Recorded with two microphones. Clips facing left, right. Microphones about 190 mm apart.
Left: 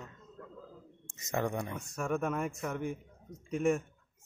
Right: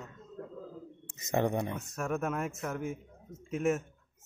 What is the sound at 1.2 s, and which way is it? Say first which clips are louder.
Speech: right 4 dB; 20° right (ahead or behind).